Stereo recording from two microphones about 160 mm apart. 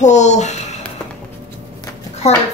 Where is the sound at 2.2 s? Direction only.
40° left (ahead or behind).